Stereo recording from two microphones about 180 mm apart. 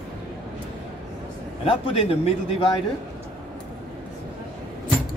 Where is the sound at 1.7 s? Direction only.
30° left (ahead or behind).